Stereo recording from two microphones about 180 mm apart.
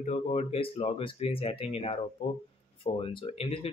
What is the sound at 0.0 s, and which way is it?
Speech, 40° left (ahead or behind).